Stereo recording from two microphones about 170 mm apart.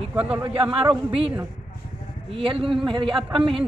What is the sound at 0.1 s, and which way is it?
Speech, 5° right (ahead or behind).